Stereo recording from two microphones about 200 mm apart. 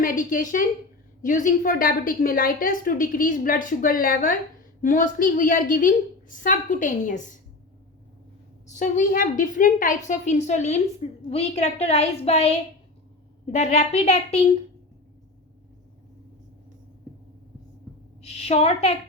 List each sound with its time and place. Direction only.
0.0 s a woman's voice: 40° left (ahead or behind)
8.6 s a woman's voice: 35° left (ahead or behind)
18.2 s a woman's voice: 30° left (ahead or behind)